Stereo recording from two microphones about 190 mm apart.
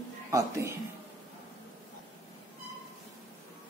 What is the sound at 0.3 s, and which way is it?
Speech, 15° right (ahead or behind).